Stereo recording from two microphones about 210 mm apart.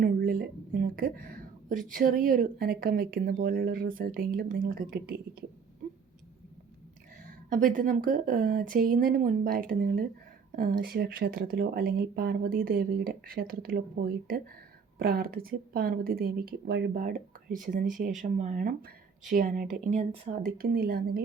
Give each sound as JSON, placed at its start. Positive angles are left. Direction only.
{"t": 0.0, "sound": "speech", "side_deg": -40}
{"t": 7.5, "sound": "speech", "side_deg": -40}
{"t": 17.0, "sound": "speech", "side_deg": -40}
{"t": 20.4, "sound": "speech", "side_deg": -45}